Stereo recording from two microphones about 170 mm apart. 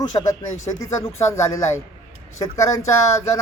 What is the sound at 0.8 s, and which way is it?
Speech, 15° left (ahead or behind).